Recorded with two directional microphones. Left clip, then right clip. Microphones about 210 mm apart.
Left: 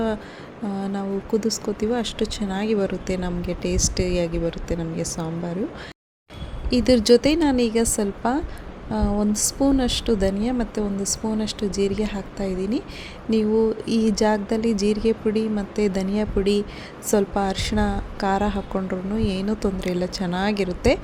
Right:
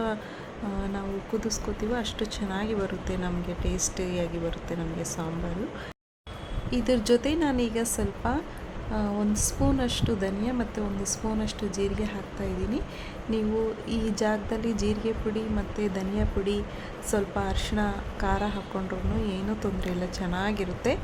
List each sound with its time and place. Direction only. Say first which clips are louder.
0.9 s a woman's voice: left 10 dB; 15° left (ahead or behind)
6.7 s a woman's voice: left 8 dB; 20° left (ahead or behind)
13.8 s a woman's voice: left 7 dB; 20° left (ahead or behind)